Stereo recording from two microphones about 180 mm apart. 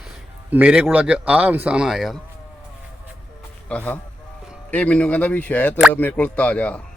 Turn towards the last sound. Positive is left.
turn(degrees=5)  # may be behind; listen again after turning